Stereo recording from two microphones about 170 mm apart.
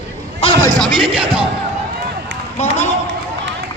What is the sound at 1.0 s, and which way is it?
Speech, 30° right (ahead or behind).